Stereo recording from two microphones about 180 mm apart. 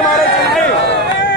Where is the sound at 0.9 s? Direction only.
90° left.